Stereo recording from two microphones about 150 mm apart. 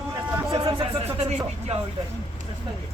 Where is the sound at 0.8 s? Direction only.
40° right (ahead or behind).